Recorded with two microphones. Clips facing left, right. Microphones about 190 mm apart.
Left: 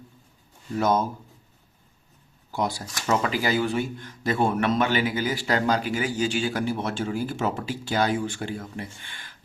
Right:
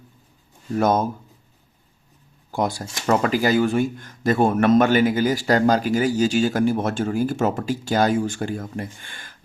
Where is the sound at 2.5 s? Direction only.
50° right (ahead or behind).